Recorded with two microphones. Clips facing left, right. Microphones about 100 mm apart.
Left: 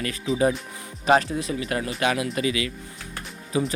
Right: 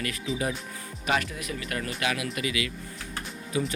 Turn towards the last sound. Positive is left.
turn(degrees=30)  # may be behind; listen again after turning